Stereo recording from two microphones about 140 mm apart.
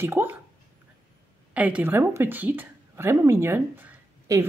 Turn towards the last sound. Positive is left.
turn(degrees=-15)  # may be behind; listen again after turning